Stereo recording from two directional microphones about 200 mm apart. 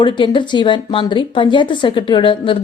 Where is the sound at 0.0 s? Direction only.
25° left (ahead or behind).